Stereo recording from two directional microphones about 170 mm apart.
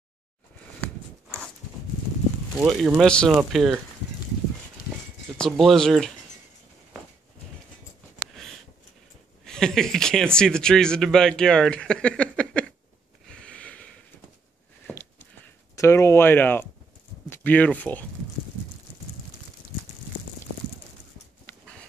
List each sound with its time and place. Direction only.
2.6 s speech: centre (ahead or behind)
5.4 s speech: centre (ahead or behind)
9.4 s speech: 5° left (ahead or behind)
13.3 s a sound: 5° left (ahead or behind)
17.3 s speech: 10° left (ahead or behind)
21.5 s a sound: 5° left (ahead or behind)